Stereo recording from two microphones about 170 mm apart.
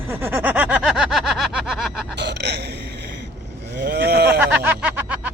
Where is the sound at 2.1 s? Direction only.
85° right.